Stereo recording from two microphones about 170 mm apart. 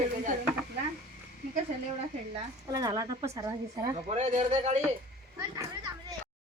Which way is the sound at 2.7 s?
25° right (ahead or behind).